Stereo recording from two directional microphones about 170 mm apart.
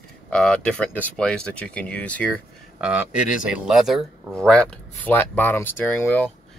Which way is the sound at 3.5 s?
5° right (ahead or behind).